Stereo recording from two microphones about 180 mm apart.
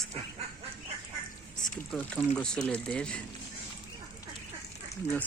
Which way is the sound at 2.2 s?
5° left (ahead or behind).